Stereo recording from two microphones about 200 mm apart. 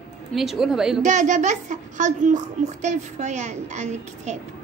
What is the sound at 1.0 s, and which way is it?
A woman's voice, 40° right (ahead or behind).